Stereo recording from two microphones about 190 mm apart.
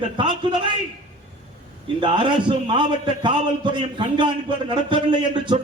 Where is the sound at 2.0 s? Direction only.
25° right (ahead or behind).